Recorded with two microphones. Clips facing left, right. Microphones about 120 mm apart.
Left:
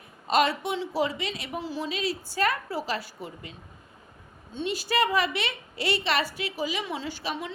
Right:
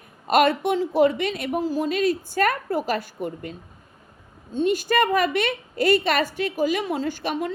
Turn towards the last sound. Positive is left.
turn(degrees=-50)  # may be behind; listen again after turning